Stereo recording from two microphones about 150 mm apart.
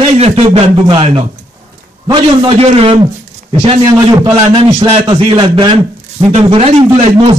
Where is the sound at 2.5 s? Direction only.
40° right (ahead or behind).